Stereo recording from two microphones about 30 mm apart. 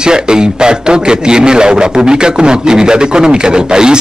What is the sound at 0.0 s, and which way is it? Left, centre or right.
A man's voice, right.